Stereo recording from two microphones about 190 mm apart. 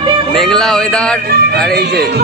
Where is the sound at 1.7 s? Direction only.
60° right (ahead or behind).